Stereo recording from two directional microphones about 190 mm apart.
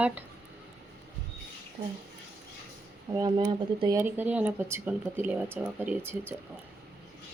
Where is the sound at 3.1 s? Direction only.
20° right (ahead or behind).